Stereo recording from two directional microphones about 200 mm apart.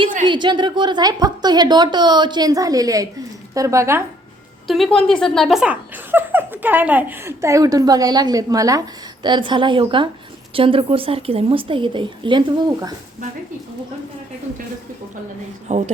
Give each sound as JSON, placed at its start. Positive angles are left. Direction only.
{"t": 0.3, "sound": "a woman's voice", "side_deg": -25}
{"t": 4.6, "sound": "a woman's voice", "side_deg": 0}
{"t": 15.7, "sound": "a woman's voice", "side_deg": -35}